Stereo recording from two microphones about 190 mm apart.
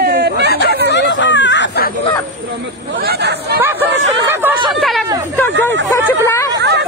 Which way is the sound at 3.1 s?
60° right (ahead or behind).